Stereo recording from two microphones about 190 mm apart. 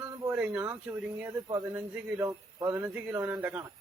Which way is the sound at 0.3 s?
10° right (ahead or behind).